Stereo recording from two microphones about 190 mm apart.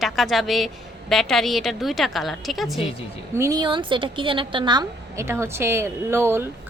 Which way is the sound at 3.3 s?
15° right (ahead or behind).